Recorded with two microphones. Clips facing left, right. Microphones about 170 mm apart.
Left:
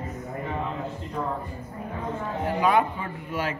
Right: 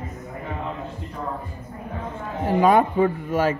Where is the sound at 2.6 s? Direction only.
45° right (ahead or behind).